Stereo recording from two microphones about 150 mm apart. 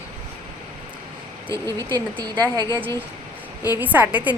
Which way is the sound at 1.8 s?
25° right (ahead or behind).